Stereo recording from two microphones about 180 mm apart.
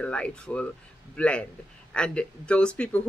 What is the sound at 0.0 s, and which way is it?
Speech, 5° left (ahead or behind).